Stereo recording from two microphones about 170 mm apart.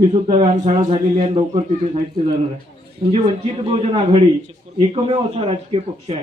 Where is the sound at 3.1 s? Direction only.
35° right (ahead or behind).